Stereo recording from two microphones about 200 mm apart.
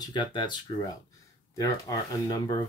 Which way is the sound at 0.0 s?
20° left (ahead or behind).